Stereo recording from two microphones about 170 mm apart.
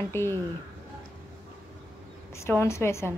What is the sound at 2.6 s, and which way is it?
Speech, 15° left (ahead or behind).